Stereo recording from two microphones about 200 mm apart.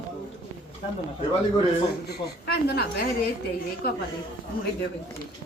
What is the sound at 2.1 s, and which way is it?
A woman's voice, 55° left (ahead or behind).